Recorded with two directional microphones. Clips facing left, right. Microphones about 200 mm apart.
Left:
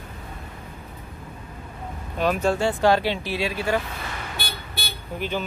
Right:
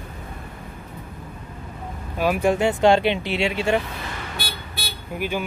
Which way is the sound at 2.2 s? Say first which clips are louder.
Right 2 dB; 10° right (ahead or behind).